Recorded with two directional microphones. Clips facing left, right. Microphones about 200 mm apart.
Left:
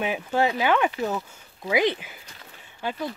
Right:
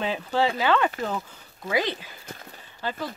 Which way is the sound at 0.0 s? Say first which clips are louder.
Left 1 dB; 10° left (ahead or behind).